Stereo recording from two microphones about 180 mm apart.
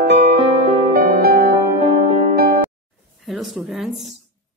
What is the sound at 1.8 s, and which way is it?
Music, 35° right (ahead or behind).